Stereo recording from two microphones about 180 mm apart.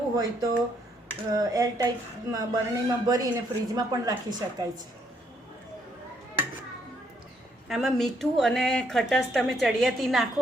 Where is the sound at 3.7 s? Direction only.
20° right (ahead or behind).